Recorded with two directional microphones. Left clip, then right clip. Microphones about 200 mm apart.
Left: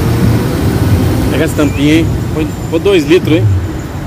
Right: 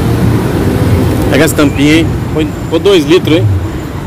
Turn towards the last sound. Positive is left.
turn(degrees=-10)  # may be behind; listen again after turning